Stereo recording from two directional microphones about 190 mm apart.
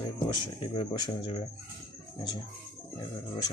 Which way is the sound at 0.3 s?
25° left (ahead or behind).